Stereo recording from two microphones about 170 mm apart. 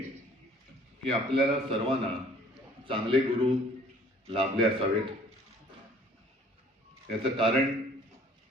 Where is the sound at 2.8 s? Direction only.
30° right (ahead or behind).